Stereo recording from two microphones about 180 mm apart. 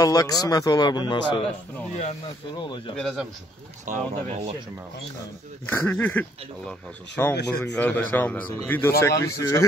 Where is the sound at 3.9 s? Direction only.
45° right (ahead or behind).